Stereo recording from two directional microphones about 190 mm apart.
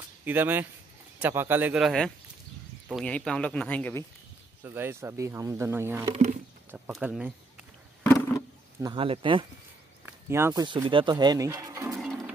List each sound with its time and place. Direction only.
0.2 s speech: 10° right (ahead or behind); by 4.0 s 10° left (ahead or behind)
4.6 s speech: 10° right (ahead or behind)
6.1 s speech: 35° right (ahead or behind)
6.9 s speech: 5° right (ahead or behind)
8.0 s wild animals: 10° left (ahead or behind)
8.8 s speech: 30° right (ahead or behind)